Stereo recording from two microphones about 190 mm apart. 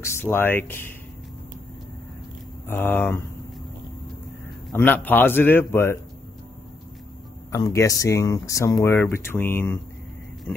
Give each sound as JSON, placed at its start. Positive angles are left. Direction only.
{"t": 0.2, "sound": "speech", "side_deg": 10}
{"t": 2.7, "sound": "speech", "side_deg": 10}
{"t": 4.7, "sound": "speech", "side_deg": 10}
{"t": 7.5, "sound": "speech", "side_deg": 15}